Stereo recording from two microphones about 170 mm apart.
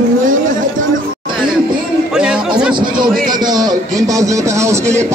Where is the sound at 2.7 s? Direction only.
25° right (ahead or behind).